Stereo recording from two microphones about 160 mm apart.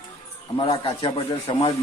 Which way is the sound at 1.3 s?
25° left (ahead or behind).